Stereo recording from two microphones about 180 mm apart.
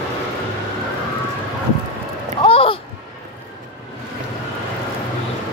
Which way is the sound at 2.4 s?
30° left (ahead or behind).